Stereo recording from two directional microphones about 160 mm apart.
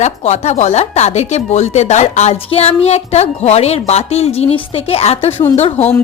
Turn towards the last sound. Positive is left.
turn(degrees=40)  # may be behind; listen again after turning